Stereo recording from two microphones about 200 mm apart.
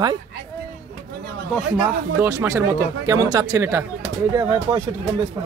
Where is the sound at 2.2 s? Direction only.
15° right (ahead or behind).